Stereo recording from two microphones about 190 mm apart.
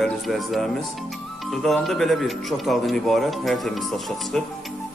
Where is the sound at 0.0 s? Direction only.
Centre (ahead or behind).